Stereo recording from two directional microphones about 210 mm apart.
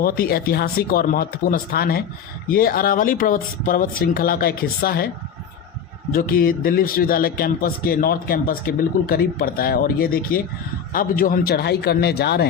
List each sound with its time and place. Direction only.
0.0 s speech: 45° left (ahead or behind)
6.1 s speech: 45° left (ahead or behind)